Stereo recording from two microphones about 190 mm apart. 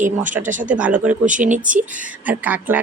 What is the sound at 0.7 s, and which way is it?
Speech, 5° right (ahead or behind).